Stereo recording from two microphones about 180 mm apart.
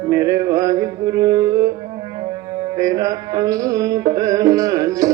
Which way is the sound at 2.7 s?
20° right (ahead or behind).